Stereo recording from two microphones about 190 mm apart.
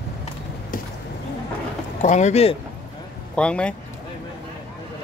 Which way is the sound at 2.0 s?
40° left (ahead or behind).